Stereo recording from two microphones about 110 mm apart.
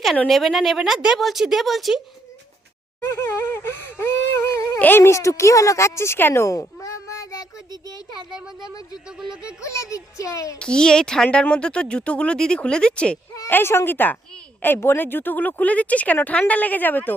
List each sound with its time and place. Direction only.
0.3 s speech: centre (ahead or behind)
3.0 s a sound: 25° left (ahead or behind)
4.8 s speech: 20° left (ahead or behind)
8.3 s speech: 5° right (ahead or behind)
9.0 s music: 5° right (ahead or behind)
9.6 s a child's voice: 30° left (ahead or behind)
10.6 s a woman's voice: 10° left (ahead or behind)
13.5 s a woman's voice: 20° left (ahead or behind)